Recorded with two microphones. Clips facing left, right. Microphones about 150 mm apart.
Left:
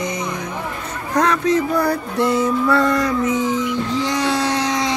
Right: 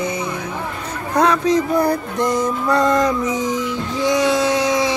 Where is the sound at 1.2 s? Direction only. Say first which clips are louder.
Right 1 dB; 10° right (ahead or behind).